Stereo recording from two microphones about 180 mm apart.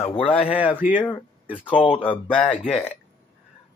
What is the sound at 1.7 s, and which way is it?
Speech, 30° left (ahead or behind).